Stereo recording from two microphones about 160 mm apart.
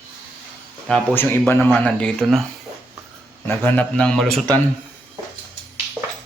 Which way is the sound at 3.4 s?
10° left (ahead or behind).